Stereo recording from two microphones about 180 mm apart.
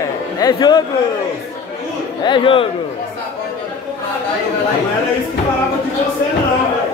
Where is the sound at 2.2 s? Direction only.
25° left (ahead or behind).